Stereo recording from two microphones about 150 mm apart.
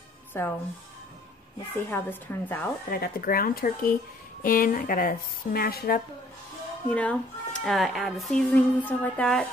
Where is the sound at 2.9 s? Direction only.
75° left (ahead or behind).